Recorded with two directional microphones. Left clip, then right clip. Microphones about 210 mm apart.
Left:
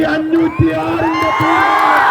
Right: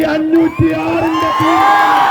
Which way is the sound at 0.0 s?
35° left (ahead or behind).